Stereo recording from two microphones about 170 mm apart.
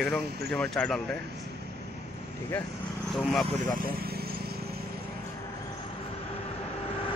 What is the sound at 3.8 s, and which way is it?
Vehicle, 60° right (ahead or behind).